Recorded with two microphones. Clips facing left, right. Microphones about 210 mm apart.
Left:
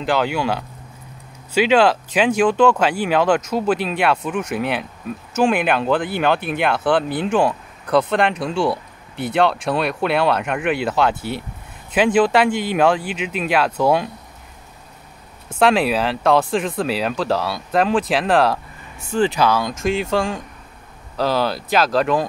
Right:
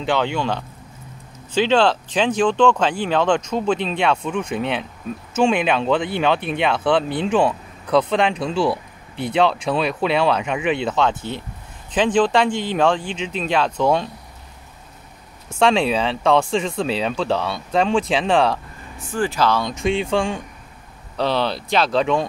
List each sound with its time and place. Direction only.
0.0 s speech: 5° left (ahead or behind)
15.6 s speech: 5° left (ahead or behind)
19.0 s speech: 20° left (ahead or behind)
19.4 s speech: 5° left (ahead or behind)